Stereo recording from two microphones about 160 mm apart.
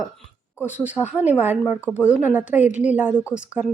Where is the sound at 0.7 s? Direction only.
10° right (ahead or behind).